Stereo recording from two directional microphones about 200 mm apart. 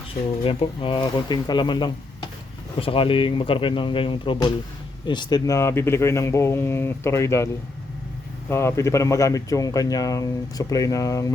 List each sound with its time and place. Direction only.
0.4 s speech: 25° left (ahead or behind)